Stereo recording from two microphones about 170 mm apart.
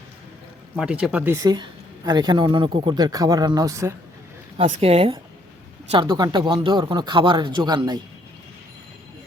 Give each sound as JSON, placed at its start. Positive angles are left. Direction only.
{"t": 0.8, "sound": "speech", "side_deg": -5}
{"t": 2.0, "sound": "speech", "side_deg": -25}
{"t": 4.5, "sound": "speech", "side_deg": -35}